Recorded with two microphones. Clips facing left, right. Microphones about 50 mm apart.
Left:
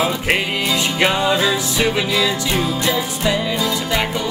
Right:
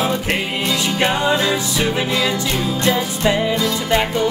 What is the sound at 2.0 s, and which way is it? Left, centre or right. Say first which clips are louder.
Music: even; right.